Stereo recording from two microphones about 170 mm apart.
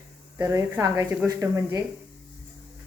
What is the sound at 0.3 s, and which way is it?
Speech, 20° right (ahead or behind).